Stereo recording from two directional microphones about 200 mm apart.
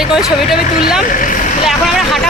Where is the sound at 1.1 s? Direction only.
40° left (ahead or behind).